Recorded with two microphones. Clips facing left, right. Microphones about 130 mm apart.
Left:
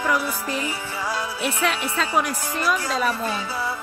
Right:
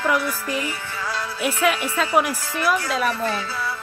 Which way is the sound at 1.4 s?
10° right (ahead or behind).